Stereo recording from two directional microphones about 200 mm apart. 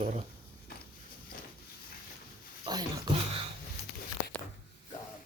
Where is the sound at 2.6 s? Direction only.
20° right (ahead or behind).